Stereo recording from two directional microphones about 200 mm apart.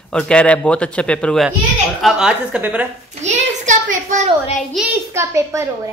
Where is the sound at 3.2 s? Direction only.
35° right (ahead or behind).